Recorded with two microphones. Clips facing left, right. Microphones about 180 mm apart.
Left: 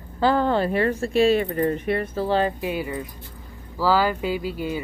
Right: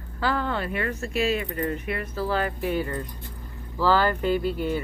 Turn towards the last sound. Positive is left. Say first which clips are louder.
# right 2 dB
turn(degrees=10)  # may be behind; listen again after turning